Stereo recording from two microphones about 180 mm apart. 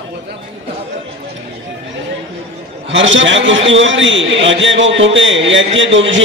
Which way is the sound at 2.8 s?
90° right.